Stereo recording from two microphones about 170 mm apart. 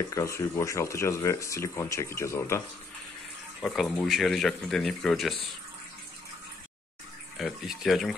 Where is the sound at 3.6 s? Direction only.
Centre (ahead or behind).